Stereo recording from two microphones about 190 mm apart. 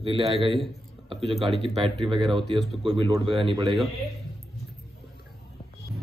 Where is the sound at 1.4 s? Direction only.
30° right (ahead or behind).